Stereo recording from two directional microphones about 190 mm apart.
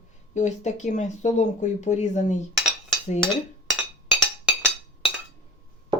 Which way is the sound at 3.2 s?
Centre (ahead or behind).